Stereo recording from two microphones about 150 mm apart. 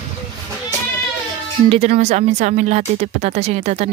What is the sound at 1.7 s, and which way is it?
Speech, 45° right (ahead or behind).